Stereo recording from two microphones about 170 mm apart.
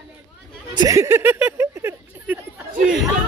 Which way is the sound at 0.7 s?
20° right (ahead or behind).